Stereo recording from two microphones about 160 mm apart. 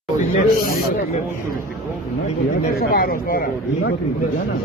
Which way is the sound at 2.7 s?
70° left (ahead or behind).